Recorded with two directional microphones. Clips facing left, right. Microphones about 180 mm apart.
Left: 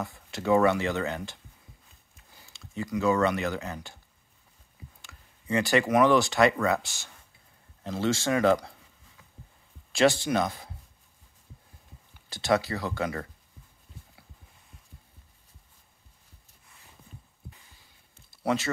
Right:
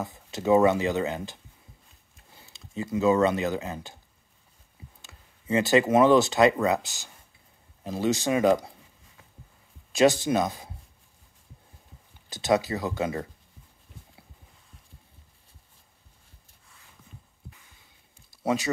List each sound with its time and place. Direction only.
0.0 s speech: 20° right (ahead or behind)
5.0 s speech: 20° right (ahead or behind)
9.9 s speech: 20° right (ahead or behind)
12.3 s speech: 20° right (ahead or behind)
18.4 s speech: 15° right (ahead or behind)